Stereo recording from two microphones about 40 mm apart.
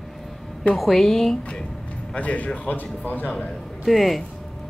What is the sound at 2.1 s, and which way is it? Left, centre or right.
Speech, left.